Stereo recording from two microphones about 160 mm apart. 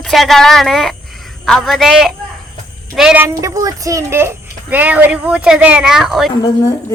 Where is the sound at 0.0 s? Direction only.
Centre (ahead or behind).